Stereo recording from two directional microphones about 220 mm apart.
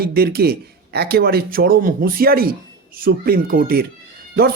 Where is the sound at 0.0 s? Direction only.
45° right (ahead or behind).